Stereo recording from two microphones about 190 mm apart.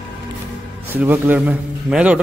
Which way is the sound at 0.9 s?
10° right (ahead or behind).